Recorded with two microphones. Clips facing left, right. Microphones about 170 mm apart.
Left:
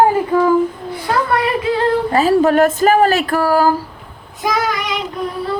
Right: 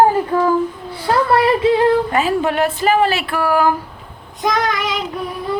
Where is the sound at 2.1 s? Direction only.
40° left (ahead or behind).